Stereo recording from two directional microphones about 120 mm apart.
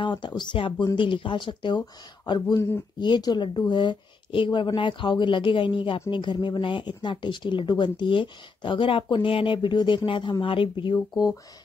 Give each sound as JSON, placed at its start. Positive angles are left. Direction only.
{"t": 0.0, "sound": "a woman's voice", "side_deg": 40}
{"t": 2.5, "sound": "speech", "side_deg": 25}
{"t": 3.0, "sound": "a woman's voice", "side_deg": 35}